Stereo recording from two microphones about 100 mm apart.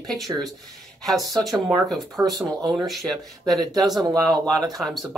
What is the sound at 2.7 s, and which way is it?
Speech, centre (ahead or behind).